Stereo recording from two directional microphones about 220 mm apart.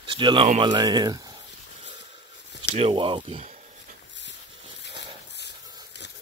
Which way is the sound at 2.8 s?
25° right (ahead or behind).